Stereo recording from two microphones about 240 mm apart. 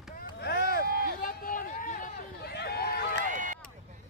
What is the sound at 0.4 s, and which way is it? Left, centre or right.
Vehicle, left.